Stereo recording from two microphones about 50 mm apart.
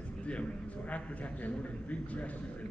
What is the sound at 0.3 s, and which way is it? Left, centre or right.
A man's voice, left.